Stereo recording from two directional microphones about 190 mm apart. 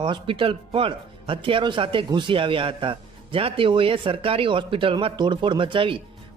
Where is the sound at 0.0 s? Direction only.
25° right (ahead or behind).